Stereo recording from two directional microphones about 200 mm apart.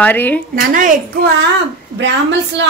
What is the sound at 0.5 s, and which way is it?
Speech, 40° right (ahead or behind).